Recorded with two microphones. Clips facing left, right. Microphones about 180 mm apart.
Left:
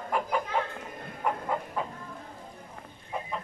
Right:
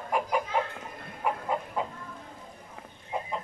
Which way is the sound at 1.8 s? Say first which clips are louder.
Right 1 dB; 20° right (ahead or behind).